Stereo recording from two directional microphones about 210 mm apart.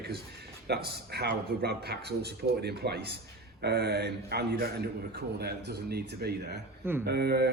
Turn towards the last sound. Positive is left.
turn(degrees=-50)  # may be behind; listen again after turning